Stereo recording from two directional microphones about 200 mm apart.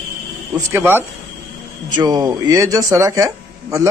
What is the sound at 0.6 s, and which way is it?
Speech, 10° right (ahead or behind).